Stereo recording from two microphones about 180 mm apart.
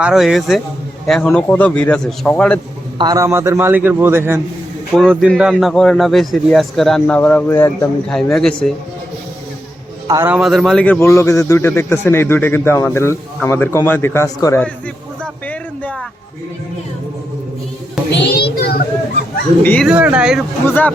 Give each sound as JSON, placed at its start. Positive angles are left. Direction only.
{"t": 0.0, "sound": "a man's voice", "side_deg": -5}
{"t": 3.0, "sound": "a man's voice", "side_deg": -20}
{"t": 4.9, "sound": "a man's voice", "side_deg": 5}
{"t": 8.1, "sound": "a man's voice", "side_deg": 5}
{"t": 10.1, "sound": "a man's voice", "side_deg": -15}
{"t": 10.3, "sound": "a man's voice", "side_deg": 0}
{"t": 15.2, "sound": "a sound", "side_deg": 5}
{"t": 18.1, "sound": "a child's voice", "side_deg": 70}
{"t": 19.6, "sound": "a man's voice", "side_deg": 10}
{"t": 19.9, "sound": "a man's voice", "side_deg": -5}
{"t": 20.7, "sound": "a man's voice", "side_deg": 10}